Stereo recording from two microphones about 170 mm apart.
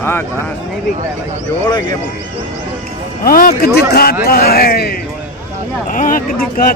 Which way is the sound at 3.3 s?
60° left (ahead or behind).